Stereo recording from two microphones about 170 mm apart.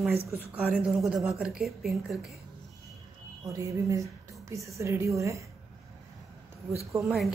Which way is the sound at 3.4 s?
20° right (ahead or behind).